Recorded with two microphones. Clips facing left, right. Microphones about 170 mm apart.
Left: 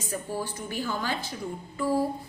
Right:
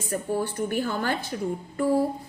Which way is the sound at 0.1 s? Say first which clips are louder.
Right 6 dB; 55° right (ahead or behind).